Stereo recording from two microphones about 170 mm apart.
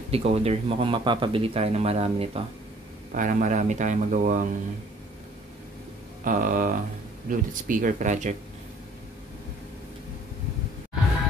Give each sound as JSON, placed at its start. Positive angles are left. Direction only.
{"t": 0.1, "sound": "speech", "side_deg": -35}
{"t": 3.2, "sound": "speech", "side_deg": -50}
{"t": 6.2, "sound": "speech", "side_deg": -55}